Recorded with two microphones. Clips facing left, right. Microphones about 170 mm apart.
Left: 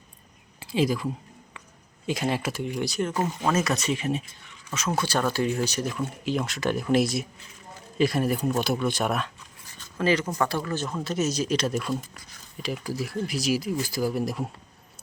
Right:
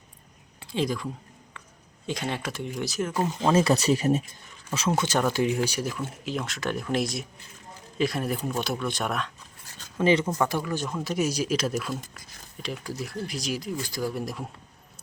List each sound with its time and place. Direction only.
0.6 s speech: 5° left (ahead or behind)
3.4 s speech: 30° right (ahead or behind)
4.9 s speech: 20° right (ahead or behind); by 9.3 s 5° left (ahead or behind)
10.0 s speech: 20° right (ahead or behind)
10.2 s speech: 10° right (ahead or behind)